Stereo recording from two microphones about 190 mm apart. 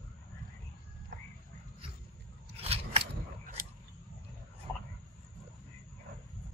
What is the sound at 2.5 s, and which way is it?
Scissors, 30° right (ahead or behind).